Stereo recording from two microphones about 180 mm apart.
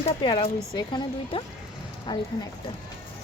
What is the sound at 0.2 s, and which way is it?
Speech, 25° left (ahead or behind).